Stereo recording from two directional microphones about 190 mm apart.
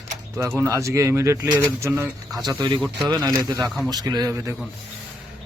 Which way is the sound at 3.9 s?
20° right (ahead or behind).